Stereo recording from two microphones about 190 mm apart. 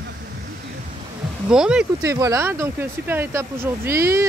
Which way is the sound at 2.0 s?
15° right (ahead or behind).